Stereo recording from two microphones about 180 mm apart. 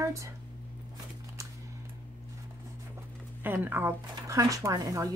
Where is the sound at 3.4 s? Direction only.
10° right (ahead or behind).